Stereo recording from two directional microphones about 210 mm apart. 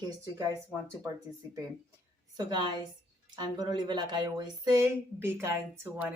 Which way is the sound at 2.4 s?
20° right (ahead or behind).